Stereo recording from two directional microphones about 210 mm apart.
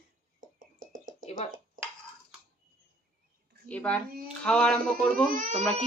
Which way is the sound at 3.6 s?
5° left (ahead or behind).